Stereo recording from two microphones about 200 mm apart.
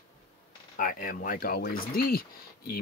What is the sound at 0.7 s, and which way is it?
Speech, 45° left (ahead or behind).